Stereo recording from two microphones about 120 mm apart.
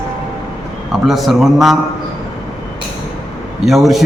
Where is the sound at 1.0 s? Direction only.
Centre (ahead or behind).